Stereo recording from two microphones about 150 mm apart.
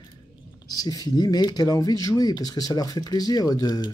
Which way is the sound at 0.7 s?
25° left (ahead or behind).